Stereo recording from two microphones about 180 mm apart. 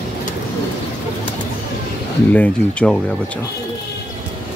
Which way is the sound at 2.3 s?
5° left (ahead or behind).